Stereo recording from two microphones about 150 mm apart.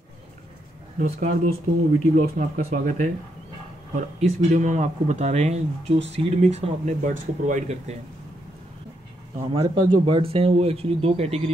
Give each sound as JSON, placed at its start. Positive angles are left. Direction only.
{"t": 0.9, "sound": "speech", "side_deg": -50}
{"t": 9.4, "sound": "speech", "side_deg": -35}